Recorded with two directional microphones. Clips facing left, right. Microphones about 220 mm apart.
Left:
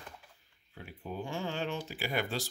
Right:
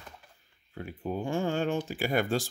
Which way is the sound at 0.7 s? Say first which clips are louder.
Right 7 dB; 50° right (ahead or behind).